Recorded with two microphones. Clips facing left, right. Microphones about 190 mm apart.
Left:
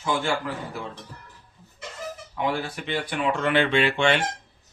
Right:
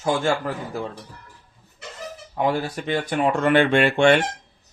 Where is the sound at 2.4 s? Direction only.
40° right (ahead or behind).